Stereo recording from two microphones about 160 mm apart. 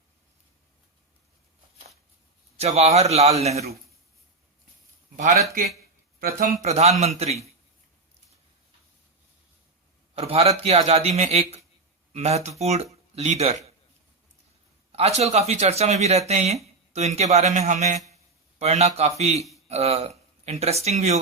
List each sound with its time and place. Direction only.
2.6 s speech: 40° right (ahead or behind)
5.1 s a man's voice: 55° right (ahead or behind)
10.2 s speech: 40° right (ahead or behind)
14.9 s speech: 40° right (ahead or behind)